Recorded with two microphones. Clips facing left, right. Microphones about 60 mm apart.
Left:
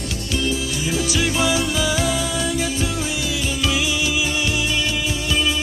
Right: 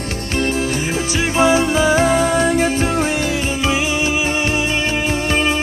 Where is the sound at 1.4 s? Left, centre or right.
Right.